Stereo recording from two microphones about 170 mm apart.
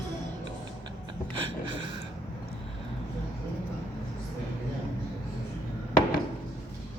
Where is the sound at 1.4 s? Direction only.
30° right (ahead or behind).